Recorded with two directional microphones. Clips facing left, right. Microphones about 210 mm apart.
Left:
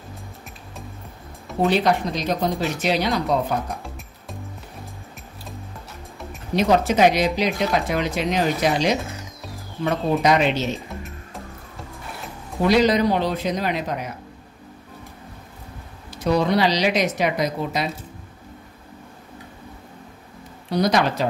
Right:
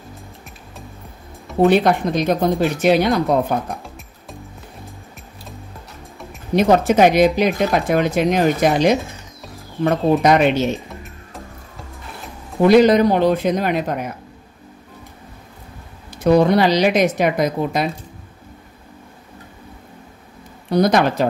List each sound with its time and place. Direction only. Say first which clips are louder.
1.7 s speech: right 2 dB; 55° right (ahead or behind)
3.8 s music: even; centre (ahead or behind)
6.5 s speech: right 4 dB; 55° right (ahead or behind)
10.2 s speech: right 3 dB; 55° right (ahead or behind)
12.6 s speech: right 6 dB; 55° right (ahead or behind)
16.3 s speech: right 6 dB; 55° right (ahead or behind)
20.7 s speech: right 4 dB; 50° right (ahead or behind)